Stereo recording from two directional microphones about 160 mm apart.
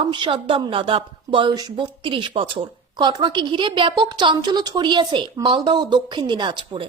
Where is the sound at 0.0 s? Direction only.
35° right (ahead or behind).